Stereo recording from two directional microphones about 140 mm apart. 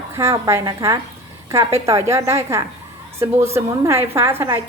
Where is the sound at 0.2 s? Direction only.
20° right (ahead or behind).